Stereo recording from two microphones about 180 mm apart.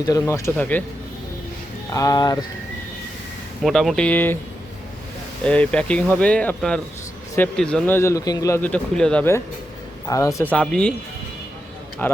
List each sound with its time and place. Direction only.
0.0 s speech: 20° left (ahead or behind)
1.9 s speech: 20° left (ahead or behind)
3.6 s speech: centre (ahead or behind)
5.4 s speech: 5° left (ahead or behind)
12.0 s speech: 10° left (ahead or behind)